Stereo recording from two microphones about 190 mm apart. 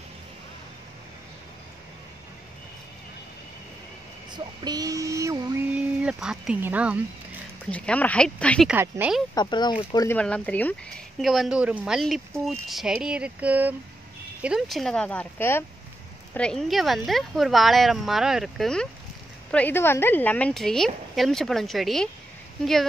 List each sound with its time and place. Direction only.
4.6 s speech: 20° right (ahead or behind)
7.7 s speech: 5° left (ahead or behind)
8.6 s speech: 10° right (ahead or behind)
9.3 s speech: 20° left (ahead or behind)
10.1 s speech: 5° left (ahead or behind)